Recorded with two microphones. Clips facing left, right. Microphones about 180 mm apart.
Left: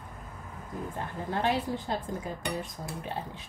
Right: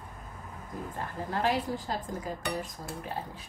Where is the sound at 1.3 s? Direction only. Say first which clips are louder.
Left 1 dB; 25° left (ahead or behind).